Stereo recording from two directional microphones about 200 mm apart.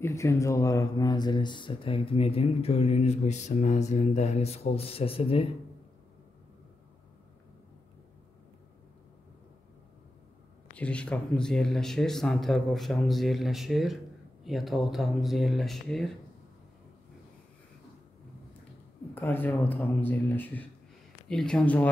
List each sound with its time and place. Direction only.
0.0 s speech: 15° left (ahead or behind)
10.8 s speech: 5° left (ahead or behind)
19.1 s speech: 10° left (ahead or behind)